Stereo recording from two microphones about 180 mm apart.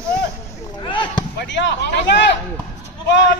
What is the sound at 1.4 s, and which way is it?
Speech, 75° left (ahead or behind).